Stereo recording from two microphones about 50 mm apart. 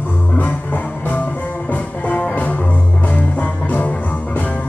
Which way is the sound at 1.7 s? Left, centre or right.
Left.